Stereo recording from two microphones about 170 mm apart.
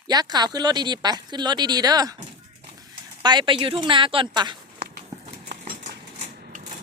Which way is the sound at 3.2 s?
25° right (ahead or behind).